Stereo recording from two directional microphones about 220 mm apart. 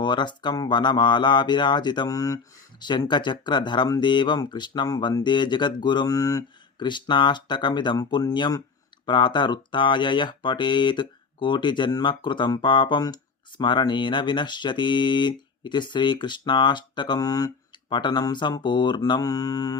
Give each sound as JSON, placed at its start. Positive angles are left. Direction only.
{"t": 0.0, "sound": "speech", "side_deg": 20}